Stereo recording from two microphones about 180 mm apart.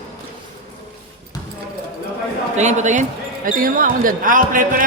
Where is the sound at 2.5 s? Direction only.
40° right (ahead or behind).